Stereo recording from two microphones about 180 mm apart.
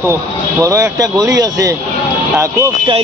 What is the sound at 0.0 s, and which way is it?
Speech, 15° right (ahead or behind).